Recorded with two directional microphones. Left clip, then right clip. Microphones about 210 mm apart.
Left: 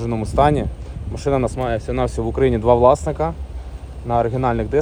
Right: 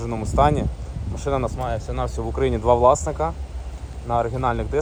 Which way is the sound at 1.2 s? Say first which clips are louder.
Left 4 dB; 20° right (ahead or behind).